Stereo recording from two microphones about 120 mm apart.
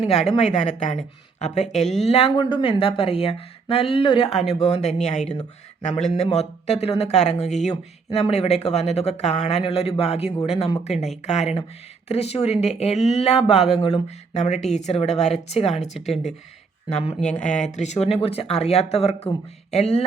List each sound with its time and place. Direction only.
0.0 s a woman's voice: 65° left (ahead or behind)
2.0 s speech: 55° left (ahead or behind)
2.3 s speech: 40° left (ahead or behind); by 10.3 s 55° left (ahead or behind)
11.3 s a woman's voice: 70° left (ahead or behind)
12.0 s speech: 60° left (ahead or behind)
17.7 s speech: 75° left (ahead or behind); by 20.1 s 60° left (ahead or behind)